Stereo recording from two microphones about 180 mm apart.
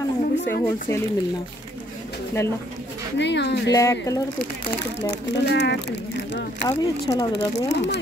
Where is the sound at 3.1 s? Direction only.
75° left (ahead or behind).